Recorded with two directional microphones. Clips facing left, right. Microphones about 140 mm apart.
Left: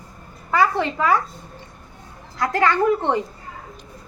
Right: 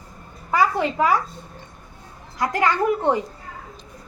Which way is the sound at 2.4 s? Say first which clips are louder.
Left 2 dB; 15° right (ahead or behind).